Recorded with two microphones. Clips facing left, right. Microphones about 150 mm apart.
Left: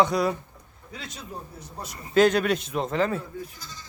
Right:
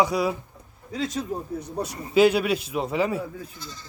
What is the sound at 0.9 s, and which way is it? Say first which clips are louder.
Speech: right 12 dB; 40° right (ahead or behind).